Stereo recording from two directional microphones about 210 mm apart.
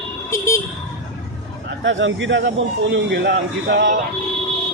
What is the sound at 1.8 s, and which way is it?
Speech, 60° right (ahead or behind).